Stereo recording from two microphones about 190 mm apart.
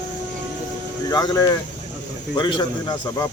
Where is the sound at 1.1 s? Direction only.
20° left (ahead or behind).